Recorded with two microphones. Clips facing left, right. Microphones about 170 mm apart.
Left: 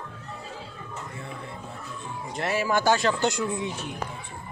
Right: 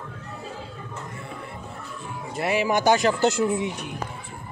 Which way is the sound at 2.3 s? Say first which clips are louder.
Right 3 dB; 10° right (ahead or behind).